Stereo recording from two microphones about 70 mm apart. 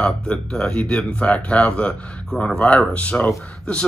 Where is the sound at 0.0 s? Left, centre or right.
Centre.